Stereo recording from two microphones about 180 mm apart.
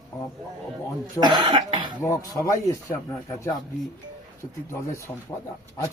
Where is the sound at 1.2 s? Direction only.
25° right (ahead or behind).